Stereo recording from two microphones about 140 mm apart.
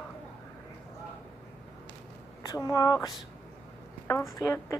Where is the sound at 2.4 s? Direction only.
25° left (ahead or behind).